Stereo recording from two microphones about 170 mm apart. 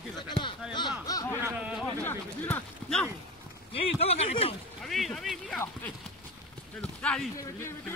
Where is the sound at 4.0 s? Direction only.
40° left (ahead or behind).